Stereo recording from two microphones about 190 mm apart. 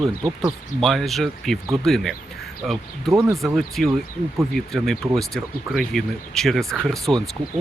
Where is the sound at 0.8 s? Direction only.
Centre (ahead or behind).